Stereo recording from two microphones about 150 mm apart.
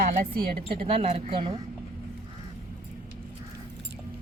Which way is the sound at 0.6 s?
40° right (ahead or behind).